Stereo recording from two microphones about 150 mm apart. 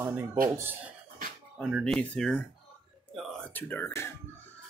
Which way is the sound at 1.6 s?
Centre (ahead or behind).